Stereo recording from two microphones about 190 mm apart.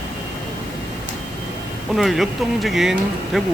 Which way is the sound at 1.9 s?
Centre (ahead or behind).